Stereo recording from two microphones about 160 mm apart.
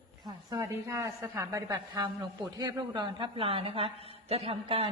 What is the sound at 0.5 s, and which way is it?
A woman's voice, 15° right (ahead or behind).